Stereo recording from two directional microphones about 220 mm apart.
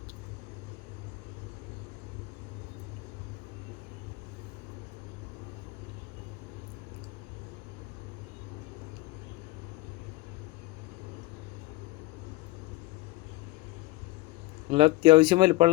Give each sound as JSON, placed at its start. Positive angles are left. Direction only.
{"t": 14.7, "sound": "speech", "side_deg": -25}